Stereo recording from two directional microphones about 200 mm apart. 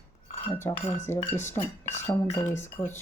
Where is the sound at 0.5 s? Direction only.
10° left (ahead or behind).